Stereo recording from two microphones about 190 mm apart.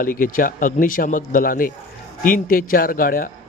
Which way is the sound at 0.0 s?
50° left (ahead or behind).